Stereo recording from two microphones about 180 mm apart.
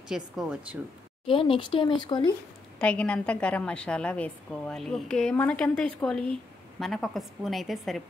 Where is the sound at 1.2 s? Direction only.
30° left (ahead or behind).